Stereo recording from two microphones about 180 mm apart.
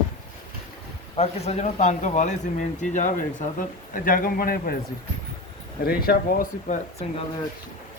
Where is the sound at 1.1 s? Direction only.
35° left (ahead or behind); by 4.7 s 55° left (ahead or behind).